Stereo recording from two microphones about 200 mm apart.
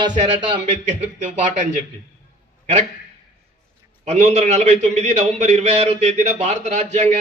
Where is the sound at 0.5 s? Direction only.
30° right (ahead or behind).